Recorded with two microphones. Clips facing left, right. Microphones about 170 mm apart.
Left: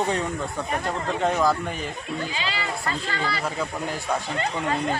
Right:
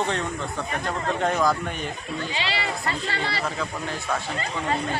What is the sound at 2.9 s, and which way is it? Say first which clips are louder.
Speech: left 3 dB; 30° right (ahead or behind).